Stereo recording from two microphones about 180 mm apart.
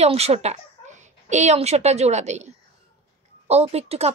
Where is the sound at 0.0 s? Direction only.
35° right (ahead or behind).